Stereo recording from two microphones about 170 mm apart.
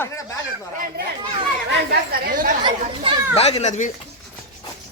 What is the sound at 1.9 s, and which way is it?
Speech, 60° right (ahead or behind).